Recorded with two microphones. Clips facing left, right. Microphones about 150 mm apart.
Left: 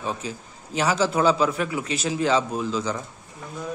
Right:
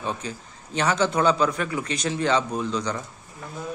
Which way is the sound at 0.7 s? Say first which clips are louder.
Even; 5° left (ahead or behind).